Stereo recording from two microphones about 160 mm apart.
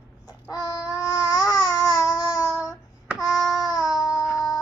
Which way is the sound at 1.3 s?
25° left (ahead or behind).